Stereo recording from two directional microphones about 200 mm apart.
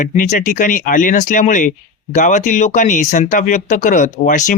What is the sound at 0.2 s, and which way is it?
Speech, 40° left (ahead or behind).